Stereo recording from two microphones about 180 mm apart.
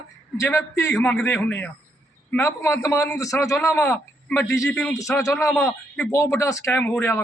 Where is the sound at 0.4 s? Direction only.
15° left (ahead or behind).